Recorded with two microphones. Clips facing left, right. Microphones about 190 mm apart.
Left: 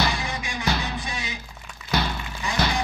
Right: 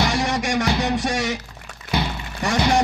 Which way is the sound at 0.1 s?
85° right.